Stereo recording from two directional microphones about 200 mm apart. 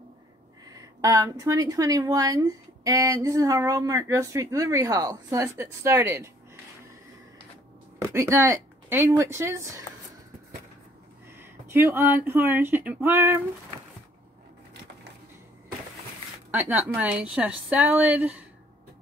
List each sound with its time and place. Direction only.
1.0 s a woman's voice: 15° right (ahead or behind)
8.0 s speech: 15° right (ahead or behind)
11.3 s speech: 10° right (ahead or behind)
16.4 s a woman's voice: 10° right (ahead or behind)